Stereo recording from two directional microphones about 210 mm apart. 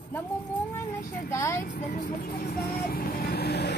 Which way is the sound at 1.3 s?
15° left (ahead or behind).